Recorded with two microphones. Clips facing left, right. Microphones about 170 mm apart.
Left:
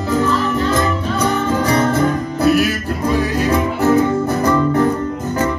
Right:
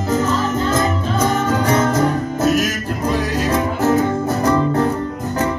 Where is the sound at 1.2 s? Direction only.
45° right (ahead or behind).